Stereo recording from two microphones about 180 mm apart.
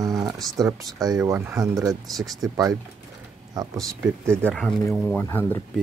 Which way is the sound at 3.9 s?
15° right (ahead or behind).